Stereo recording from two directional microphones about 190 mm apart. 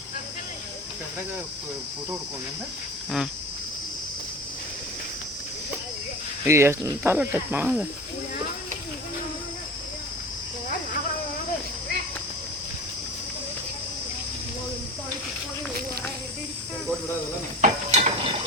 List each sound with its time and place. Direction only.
6.4 s speech: 15° right (ahead or behind)
17.6 s mechanisms: 35° right (ahead or behind)